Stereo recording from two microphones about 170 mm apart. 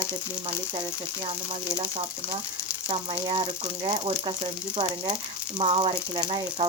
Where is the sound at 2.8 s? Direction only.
30° right (ahead or behind).